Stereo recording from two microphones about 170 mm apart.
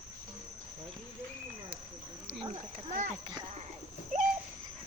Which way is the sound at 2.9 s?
50° right (ahead or behind).